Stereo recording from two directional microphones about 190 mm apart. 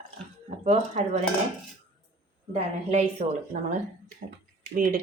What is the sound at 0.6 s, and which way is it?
Speech, 35° right (ahead or behind).